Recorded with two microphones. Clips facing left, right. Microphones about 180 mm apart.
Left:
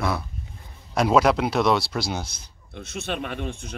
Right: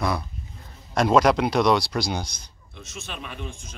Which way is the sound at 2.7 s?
65° left (ahead or behind).